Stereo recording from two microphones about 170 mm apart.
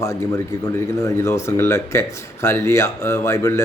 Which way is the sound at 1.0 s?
15° left (ahead or behind).